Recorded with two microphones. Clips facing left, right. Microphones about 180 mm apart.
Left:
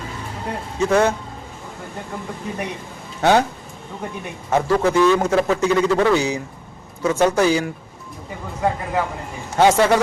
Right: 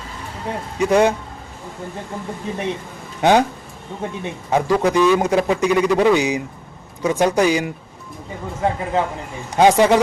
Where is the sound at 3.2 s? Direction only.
15° right (ahead or behind).